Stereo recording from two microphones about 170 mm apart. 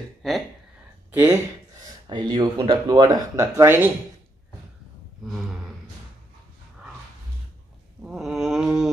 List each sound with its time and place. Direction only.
0.2 s speech: centre (ahead or behind)
1.1 s speech: 10° right (ahead or behind)
2.2 s speech: 25° right (ahead or behind)
8.0 s a sound: 5° right (ahead or behind)